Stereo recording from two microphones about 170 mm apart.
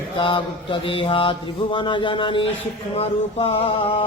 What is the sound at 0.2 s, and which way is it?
Mantra, 30° left (ahead or behind).